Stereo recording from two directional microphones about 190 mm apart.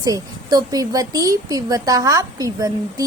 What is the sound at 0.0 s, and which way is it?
Speech, 20° right (ahead or behind).